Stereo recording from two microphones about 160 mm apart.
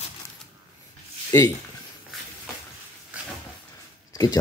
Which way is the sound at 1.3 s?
20° left (ahead or behind).